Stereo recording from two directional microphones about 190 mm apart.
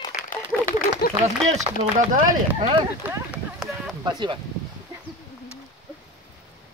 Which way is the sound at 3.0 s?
10° right (ahead or behind).